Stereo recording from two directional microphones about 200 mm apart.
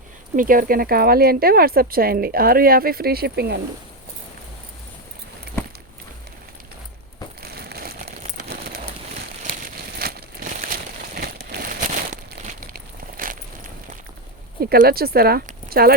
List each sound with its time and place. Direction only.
0.3 s speech: 45° right (ahead or behind)
7.4 s crumpling: 50° right (ahead or behind)
8.2 s a sound: 45° right (ahead or behind)
14.6 s speech: 50° right (ahead or behind)